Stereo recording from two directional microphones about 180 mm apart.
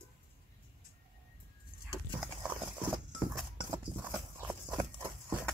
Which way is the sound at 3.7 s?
20° right (ahead or behind).